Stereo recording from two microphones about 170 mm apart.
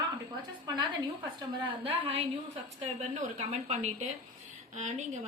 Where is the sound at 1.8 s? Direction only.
35° right (ahead or behind).